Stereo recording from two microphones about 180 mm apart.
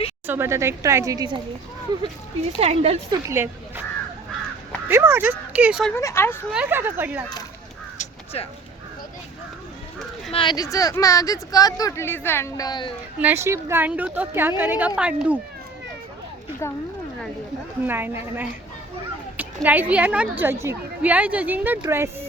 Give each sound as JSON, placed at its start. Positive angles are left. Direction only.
{"t": 0.3, "sound": "a woman's voice", "side_deg": -15}
{"t": 2.6, "sound": "a woman's voice", "side_deg": -35}
{"t": 3.2, "sound": "a woman's voice", "side_deg": -15}
{"t": 4.9, "sound": "a woman's voice", "side_deg": -10}
{"t": 6.0, "sound": "speech", "side_deg": 15}
{"t": 6.5, "sound": "a woman's voice", "side_deg": -10}
{"t": 7.9, "sound": "a sound", "side_deg": 35}
{"t": 10.3, "sound": "speech", "side_deg": 25}
{"t": 13.1, "sound": "a woman's voice", "side_deg": -10}
{"t": 17.8, "sound": "a woman's voice", "side_deg": -10}